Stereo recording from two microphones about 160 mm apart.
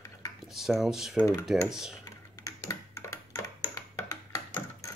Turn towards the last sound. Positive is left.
turn(degrees=20)  # may be behind; listen again after turning